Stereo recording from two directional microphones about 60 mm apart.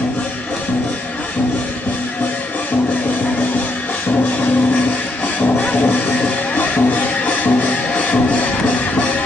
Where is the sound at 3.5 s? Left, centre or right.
Left.